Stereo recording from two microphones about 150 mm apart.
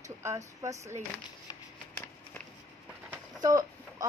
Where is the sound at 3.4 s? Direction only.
25° right (ahead or behind).